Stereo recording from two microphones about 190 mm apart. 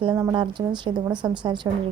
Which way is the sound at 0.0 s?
25° right (ahead or behind).